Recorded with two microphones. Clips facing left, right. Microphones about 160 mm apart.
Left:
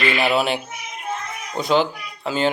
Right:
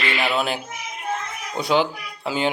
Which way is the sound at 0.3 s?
Centre (ahead or behind).